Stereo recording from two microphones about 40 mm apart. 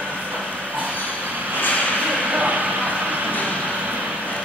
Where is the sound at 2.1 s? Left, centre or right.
Right.